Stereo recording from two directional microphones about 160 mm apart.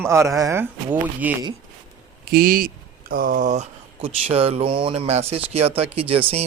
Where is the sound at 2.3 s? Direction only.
65° right (ahead or behind).